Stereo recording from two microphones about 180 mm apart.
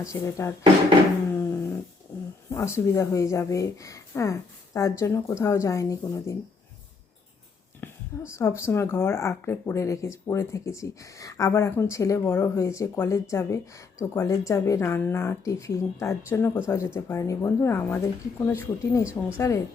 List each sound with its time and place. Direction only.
0.0 s speech: 15° left (ahead or behind)
1.4 s dog: 15° left (ahead or behind)
2.1 s a sound: 10° left (ahead or behind)
2.7 s speech: 15° left (ahead or behind)
8.3 s speech: 15° left (ahead or behind)